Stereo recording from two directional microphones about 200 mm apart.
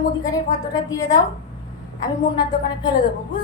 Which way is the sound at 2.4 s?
20° left (ahead or behind).